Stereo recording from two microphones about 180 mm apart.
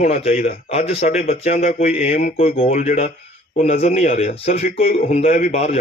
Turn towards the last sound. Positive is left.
turn(degrees=35)  # may be behind; listen again after turning